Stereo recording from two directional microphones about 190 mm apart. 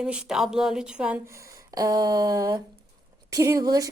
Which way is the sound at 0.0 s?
5° right (ahead or behind).